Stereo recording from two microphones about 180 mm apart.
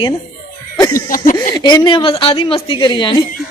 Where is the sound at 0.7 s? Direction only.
20° left (ahead or behind).